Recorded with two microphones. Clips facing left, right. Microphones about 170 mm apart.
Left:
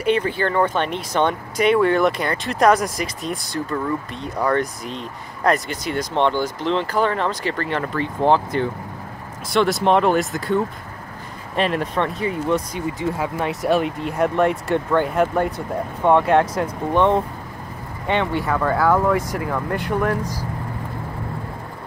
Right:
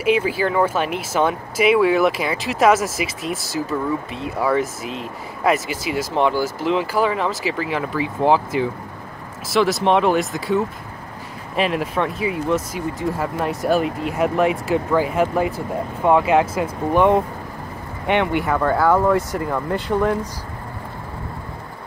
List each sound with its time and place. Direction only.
0.0 s speech: 5° right (ahead or behind)
18.5 s speech: centre (ahead or behind)